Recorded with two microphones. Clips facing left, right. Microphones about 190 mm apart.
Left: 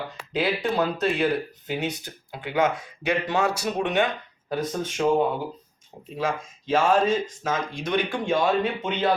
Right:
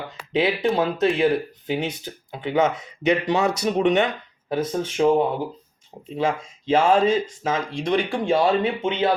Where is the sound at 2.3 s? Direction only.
20° right (ahead or behind).